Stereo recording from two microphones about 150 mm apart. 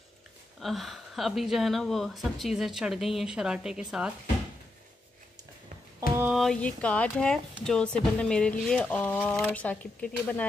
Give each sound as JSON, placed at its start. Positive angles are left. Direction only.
{"t": 0.6, "sound": "speech", "side_deg": 0}
{"t": 5.9, "sound": "a sound", "side_deg": -15}
{"t": 6.3, "sound": "speech", "side_deg": 5}